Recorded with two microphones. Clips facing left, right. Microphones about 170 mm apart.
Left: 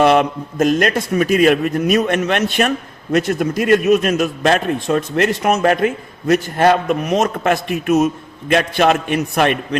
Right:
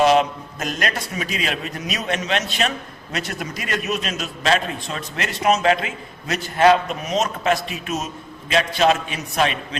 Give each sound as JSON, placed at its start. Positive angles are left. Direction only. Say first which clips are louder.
{"t": 0.0, "sound": "a man's voice", "louder": "left 3 dB", "side_deg": 55}